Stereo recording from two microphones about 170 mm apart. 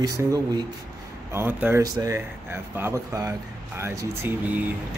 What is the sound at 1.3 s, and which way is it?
Speech, 15° right (ahead or behind).